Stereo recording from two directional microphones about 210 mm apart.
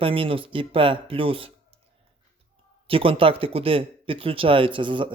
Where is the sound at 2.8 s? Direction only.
25° right (ahead or behind).